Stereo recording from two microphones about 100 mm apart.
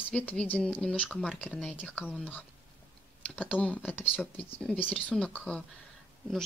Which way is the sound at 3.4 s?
15° left (ahead or behind).